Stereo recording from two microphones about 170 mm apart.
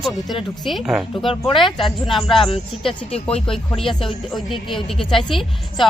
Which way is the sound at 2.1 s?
Centre (ahead or behind).